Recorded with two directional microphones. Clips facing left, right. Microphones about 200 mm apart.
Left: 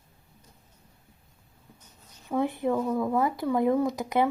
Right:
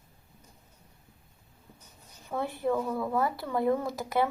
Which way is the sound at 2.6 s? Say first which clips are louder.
Left 3 dB; 10° left (ahead or behind).